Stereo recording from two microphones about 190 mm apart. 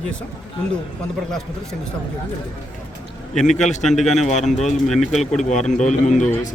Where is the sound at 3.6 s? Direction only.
40° left (ahead or behind).